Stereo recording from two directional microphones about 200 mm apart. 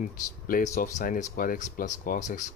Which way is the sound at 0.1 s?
45° left (ahead or behind).